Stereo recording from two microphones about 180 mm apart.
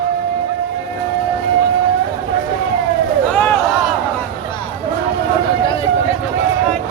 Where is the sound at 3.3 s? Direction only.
10° left (ahead or behind).